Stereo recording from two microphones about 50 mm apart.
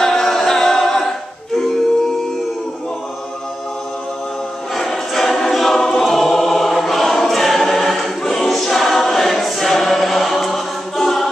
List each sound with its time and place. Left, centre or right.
0.0 s music: centre
4.7 s choir: centre